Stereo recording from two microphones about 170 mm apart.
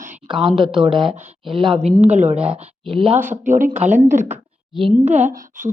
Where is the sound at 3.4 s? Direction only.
45° right (ahead or behind).